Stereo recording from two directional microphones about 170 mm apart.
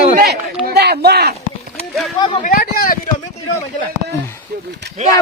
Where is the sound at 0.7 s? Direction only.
70° right (ahead or behind).